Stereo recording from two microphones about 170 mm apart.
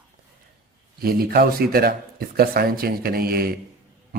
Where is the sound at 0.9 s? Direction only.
60° right (ahead or behind).